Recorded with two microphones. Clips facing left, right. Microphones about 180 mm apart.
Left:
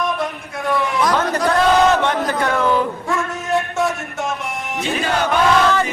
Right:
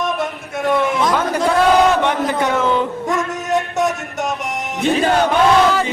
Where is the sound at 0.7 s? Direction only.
25° right (ahead or behind).